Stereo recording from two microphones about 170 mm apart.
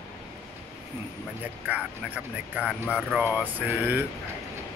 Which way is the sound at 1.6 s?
10° right (ahead or behind).